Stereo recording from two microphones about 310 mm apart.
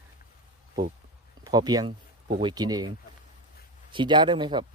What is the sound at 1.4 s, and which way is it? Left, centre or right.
Speech, centre.